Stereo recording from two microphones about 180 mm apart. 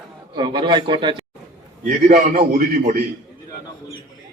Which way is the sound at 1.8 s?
55° right (ahead or behind).